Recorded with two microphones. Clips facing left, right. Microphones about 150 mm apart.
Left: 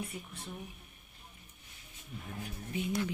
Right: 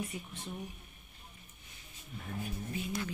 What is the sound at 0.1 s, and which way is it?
Speech, centre (ahead or behind).